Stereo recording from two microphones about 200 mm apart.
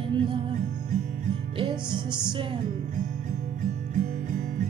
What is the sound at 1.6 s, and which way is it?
Music, 25° right (ahead or behind).